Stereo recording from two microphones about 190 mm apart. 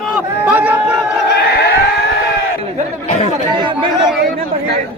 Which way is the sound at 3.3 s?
25° right (ahead or behind).